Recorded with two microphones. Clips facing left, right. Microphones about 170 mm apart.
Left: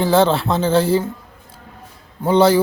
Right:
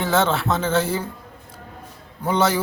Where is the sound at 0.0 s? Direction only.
35° left (ahead or behind).